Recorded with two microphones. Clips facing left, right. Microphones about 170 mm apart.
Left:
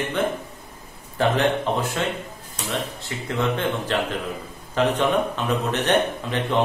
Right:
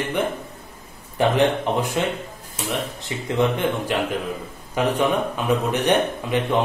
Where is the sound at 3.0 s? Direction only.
15° right (ahead or behind).